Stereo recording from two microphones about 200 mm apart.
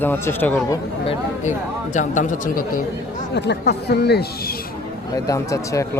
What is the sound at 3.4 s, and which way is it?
Speech, 55° left (ahead or behind).